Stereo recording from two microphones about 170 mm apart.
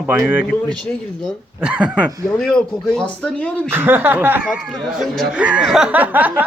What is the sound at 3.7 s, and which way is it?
Speech, 10° right (ahead or behind).